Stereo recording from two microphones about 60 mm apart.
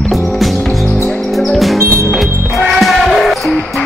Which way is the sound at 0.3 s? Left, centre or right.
Centre.